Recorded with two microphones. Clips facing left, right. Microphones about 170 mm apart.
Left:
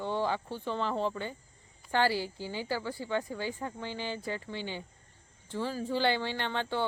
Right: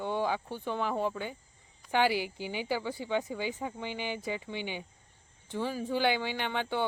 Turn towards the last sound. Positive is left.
turn(degrees=-15)  # may be behind; listen again after turning